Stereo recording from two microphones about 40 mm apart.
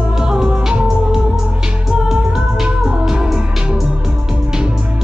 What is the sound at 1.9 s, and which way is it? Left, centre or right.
Music, centre.